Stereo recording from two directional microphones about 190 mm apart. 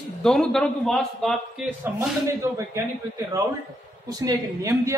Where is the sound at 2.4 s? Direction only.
15° right (ahead or behind).